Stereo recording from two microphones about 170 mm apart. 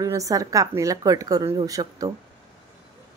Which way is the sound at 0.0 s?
20° right (ahead or behind).